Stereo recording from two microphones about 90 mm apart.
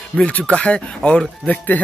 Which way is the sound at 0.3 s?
15° left (ahead or behind).